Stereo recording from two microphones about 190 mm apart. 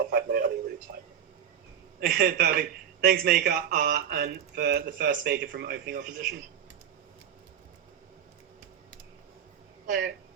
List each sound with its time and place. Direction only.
0.1 s a sound: 50° right (ahead or behind)
2.0 s a man's voice: 50° right (ahead or behind)
6.0 s a man's voice: 45° right (ahead or behind)
9.8 s speech: 45° right (ahead or behind)